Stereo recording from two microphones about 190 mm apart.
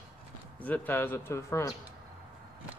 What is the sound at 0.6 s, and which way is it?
A man's voice, 10° left (ahead or behind).